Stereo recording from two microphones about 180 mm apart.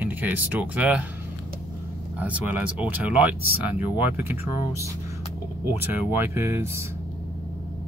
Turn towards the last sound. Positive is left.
turn(degrees=-15)  # may be behind; listen again after turning